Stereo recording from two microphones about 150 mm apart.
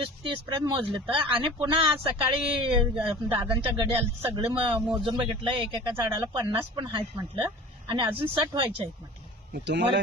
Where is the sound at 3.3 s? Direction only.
30° right (ahead or behind).